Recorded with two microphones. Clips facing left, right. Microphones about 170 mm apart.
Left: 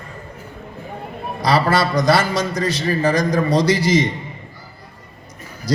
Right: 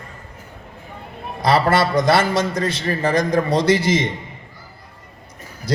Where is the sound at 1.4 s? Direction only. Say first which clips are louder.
Right 1 dB; 25° right (ahead or behind).